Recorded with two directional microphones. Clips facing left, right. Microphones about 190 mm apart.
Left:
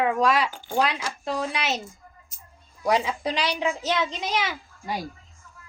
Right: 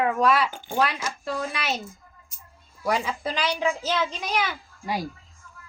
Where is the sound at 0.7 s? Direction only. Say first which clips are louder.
Left 1 dB; 20° left (ahead or behind).